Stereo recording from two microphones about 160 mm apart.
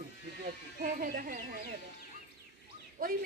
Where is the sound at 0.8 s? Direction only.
65° right (ahead or behind).